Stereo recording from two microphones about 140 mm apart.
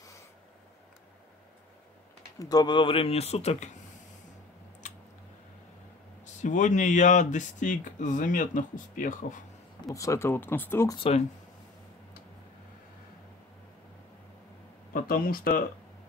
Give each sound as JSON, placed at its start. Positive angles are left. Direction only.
{"t": 2.3, "sound": "speech", "side_deg": 25}
{"t": 6.2, "sound": "speech", "side_deg": 65}
{"t": 9.8, "sound": "speech", "side_deg": 20}
{"t": 11.0, "sound": "speech", "side_deg": 45}
{"t": 14.9, "sound": "speech", "side_deg": 90}